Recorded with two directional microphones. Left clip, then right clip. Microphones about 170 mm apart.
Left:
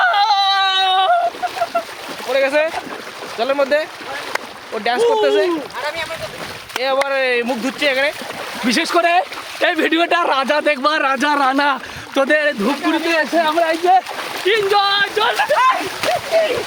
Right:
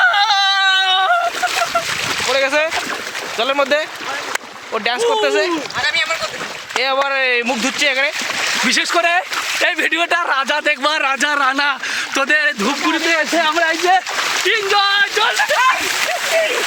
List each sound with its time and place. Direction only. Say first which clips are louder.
0.0 s yodeling: right 1 dB; 10° left (ahead or behind)
2.3 s boat: left 1 dB; 30° right (ahead or behind)
3.3 s speech: even; 30° right (ahead or behind)
6.8 s speech: even; 25° right (ahead or behind)
8.8 s speech: even; centre (ahead or behind)
9.0 s a sound: even; 10° right (ahead or behind)
9.6 s speech: left 3 dB; centre (ahead or behind)
11.5 s speech: even; 20° left (ahead or behind)
12.6 s speech: right 1 dB; 20° right (ahead or behind)
13.6 s speech: even; 10° right (ahead or behind)
16.0 s a sound: left 3 dB; 30° right (ahead or behind)